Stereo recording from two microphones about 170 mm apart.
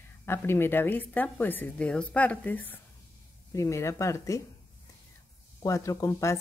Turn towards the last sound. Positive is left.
turn(degrees=15)  # may be behind; listen again after turning